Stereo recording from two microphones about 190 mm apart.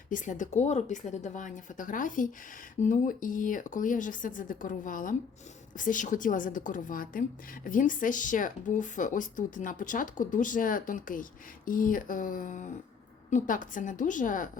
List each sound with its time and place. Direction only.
0.1 s a woman's voice: 40° left (ahead or behind)